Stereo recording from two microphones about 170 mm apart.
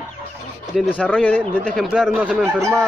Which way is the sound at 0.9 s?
10° left (ahead or behind).